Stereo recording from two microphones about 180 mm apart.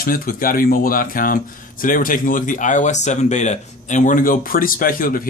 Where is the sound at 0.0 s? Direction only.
50° left (ahead or behind).